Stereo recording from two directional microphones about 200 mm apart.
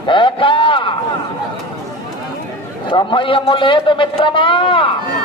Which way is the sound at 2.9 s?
25° left (ahead or behind).